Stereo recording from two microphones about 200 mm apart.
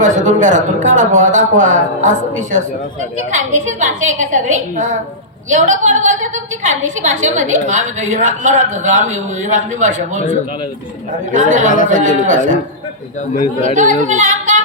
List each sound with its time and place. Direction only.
0.0 s a woman's voice: 40° right (ahead or behind)
11.3 s a woman's voice: 40° right (ahead or behind)
13.7 s a woman's voice: 40° right (ahead or behind)